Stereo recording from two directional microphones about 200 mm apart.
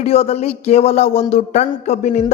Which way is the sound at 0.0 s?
30° left (ahead or behind).